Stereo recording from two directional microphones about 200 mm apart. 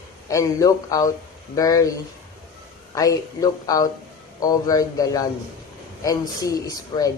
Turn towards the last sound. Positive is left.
turn(degrees=20)  # may be behind; listen again after turning